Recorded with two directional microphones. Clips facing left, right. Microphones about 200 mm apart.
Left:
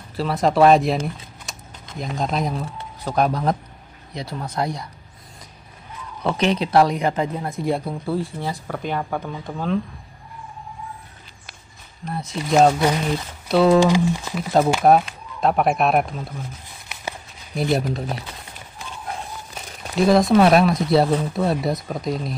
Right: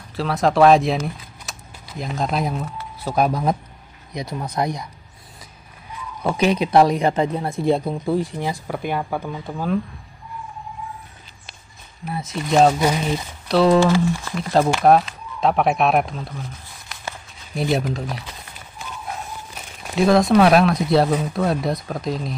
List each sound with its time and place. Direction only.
0.1 s speech: centre (ahead or behind); by 4.8 s 20° right (ahead or behind)
6.2 s speech: 10° right (ahead or behind)
12.0 s speech: 5° right (ahead or behind)
12.7 s speech: 10° right (ahead or behind)
13.5 s speech: 5° left (ahead or behind)
14.3 s speech: 5° left (ahead or behind)
17.6 s speech: centre (ahead or behind)
20.0 s speech: centre (ahead or behind)